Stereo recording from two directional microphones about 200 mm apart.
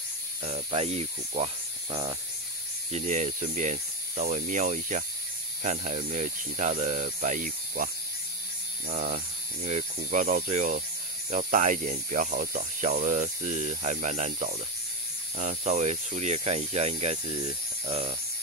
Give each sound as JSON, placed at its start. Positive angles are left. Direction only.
{"t": 0.4, "sound": "speech", "side_deg": -30}
{"t": 2.9, "sound": "speech", "side_deg": -35}
{"t": 8.9, "sound": "speech", "side_deg": -45}